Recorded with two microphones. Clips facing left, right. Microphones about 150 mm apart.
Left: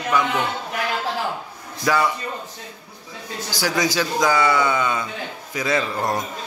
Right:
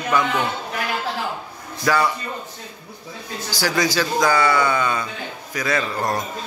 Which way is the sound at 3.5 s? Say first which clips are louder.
Right 1 dB; 20° left (ahead or behind).